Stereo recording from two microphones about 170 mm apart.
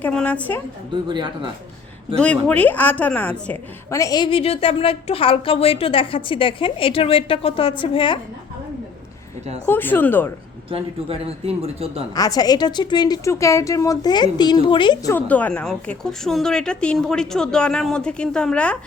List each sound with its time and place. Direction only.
0.0 s speech: 5° left (ahead or behind)
1.0 s speech: 25° right (ahead or behind)
2.1 s a woman's voice: 5° left (ahead or behind); by 8.2 s 30° left (ahead or behind)
9.6 s speech: 10° left (ahead or behind)
10.7 s a man's voice: 35° right (ahead or behind)
12.1 s a woman's voice: 20° left (ahead or behind)
15.1 s a woman's voice: 10° left (ahead or behind)